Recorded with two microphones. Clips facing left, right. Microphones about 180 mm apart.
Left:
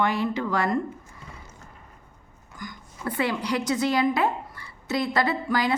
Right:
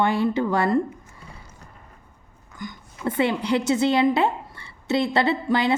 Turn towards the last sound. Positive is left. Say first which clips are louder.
# right 3 dB
turn(degrees=-25)  # may be behind; listen again after turning